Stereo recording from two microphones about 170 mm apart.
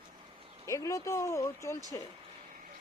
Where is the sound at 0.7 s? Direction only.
20° left (ahead or behind).